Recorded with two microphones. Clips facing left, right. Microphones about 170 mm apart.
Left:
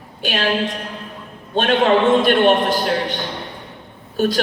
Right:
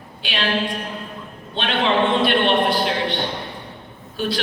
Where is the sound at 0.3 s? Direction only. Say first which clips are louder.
Left 3 dB; 45° left (ahead or behind).